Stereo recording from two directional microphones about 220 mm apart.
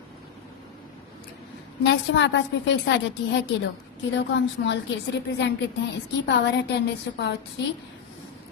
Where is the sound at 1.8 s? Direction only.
55° left (ahead or behind).